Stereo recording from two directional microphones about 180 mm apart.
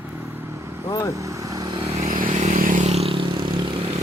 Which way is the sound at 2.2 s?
40° right (ahead or behind).